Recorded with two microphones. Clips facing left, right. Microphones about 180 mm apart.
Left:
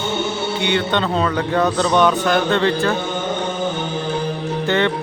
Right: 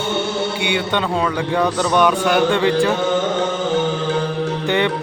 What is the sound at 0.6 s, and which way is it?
A man's voice, 10° right (ahead or behind).